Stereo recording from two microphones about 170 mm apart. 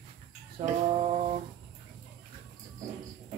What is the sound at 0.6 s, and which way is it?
Speech, 25° right (ahead or behind).